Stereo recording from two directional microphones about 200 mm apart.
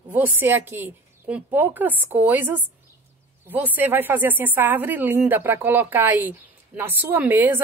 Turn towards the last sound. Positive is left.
turn(degrees=-10)  # may be behind; listen again after turning